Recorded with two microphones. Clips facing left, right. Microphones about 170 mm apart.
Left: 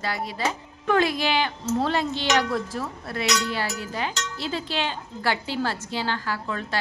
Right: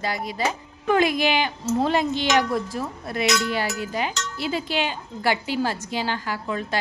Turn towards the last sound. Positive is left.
turn(degrees=-15)  # may be behind; listen again after turning